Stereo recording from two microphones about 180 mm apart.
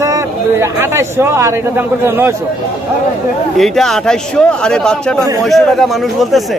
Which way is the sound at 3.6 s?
Centre (ahead or behind).